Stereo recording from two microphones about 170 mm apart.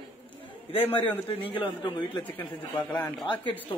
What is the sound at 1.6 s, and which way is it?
Speech, 25° left (ahead or behind).